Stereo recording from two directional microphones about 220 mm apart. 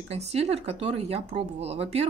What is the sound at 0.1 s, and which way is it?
Speech, 30° right (ahead or behind).